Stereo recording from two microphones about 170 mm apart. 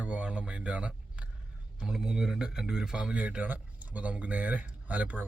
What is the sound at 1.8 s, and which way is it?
Speech, 5° right (ahead or behind).